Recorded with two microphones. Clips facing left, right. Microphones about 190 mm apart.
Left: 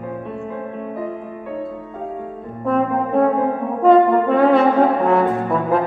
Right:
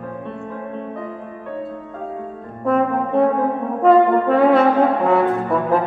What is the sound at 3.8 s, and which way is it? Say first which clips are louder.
Brass instrument: left 1 dB; centre (ahead or behind).